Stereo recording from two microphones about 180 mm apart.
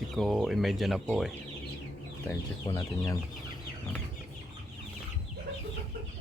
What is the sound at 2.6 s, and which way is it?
Speech, 20° left (ahead or behind).